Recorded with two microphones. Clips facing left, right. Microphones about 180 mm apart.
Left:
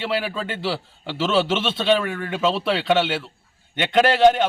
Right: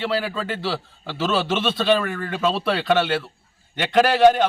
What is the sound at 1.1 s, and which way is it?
Speech, 25° left (ahead or behind).